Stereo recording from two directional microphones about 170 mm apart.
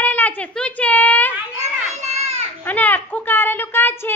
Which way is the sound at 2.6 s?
10° left (ahead or behind).